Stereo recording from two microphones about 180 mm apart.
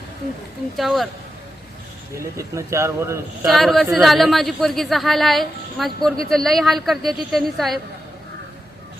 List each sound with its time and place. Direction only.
0.8 s a woman's voice: centre (ahead or behind)
2.1 s speech: 15° right (ahead or behind)
3.4 s a woman's voice: centre (ahead or behind)